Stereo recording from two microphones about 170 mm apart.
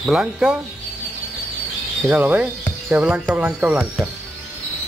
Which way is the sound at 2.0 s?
10° right (ahead or behind).